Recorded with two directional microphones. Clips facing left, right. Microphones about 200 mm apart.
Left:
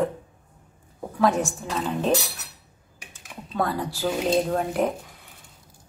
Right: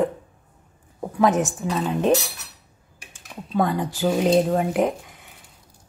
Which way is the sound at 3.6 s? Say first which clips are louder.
Right 4 dB; 20° right (ahead or behind).